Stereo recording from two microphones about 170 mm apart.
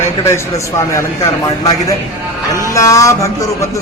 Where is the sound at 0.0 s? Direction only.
15° left (ahead or behind).